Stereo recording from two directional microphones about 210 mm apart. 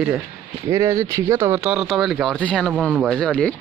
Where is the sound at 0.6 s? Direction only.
15° right (ahead or behind); by 3.5 s 5° left (ahead or behind).